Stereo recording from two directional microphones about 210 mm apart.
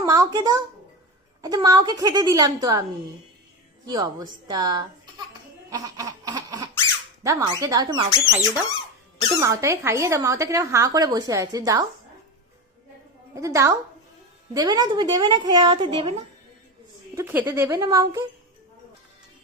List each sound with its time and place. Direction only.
0.0 s a child's voice: 15° right (ahead or behind)
3.8 s a woman's voice: 20° right (ahead or behind)
5.7 s a sound: 15° right (ahead or behind)
7.3 s speech: 15° right (ahead or behind)
13.3 s a woman's voice: 15° right (ahead or behind)
17.2 s speech: 10° right (ahead or behind)